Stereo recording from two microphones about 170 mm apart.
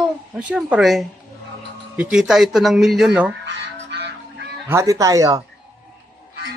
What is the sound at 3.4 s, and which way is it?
Honk, 90° right.